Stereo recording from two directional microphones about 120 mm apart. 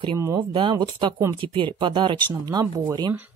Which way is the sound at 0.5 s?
40° right (ahead or behind).